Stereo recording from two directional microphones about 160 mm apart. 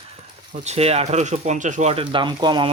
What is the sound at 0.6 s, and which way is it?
Speech, 40° right (ahead or behind).